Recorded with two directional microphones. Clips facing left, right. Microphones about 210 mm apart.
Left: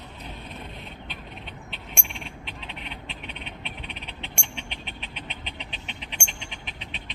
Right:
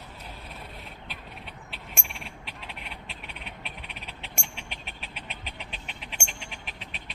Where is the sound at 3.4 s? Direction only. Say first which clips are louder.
Left 3 dB; 5° right (ahead or behind).